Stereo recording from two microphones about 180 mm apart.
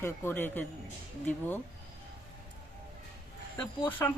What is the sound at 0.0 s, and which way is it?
Speech, 10° left (ahead or behind).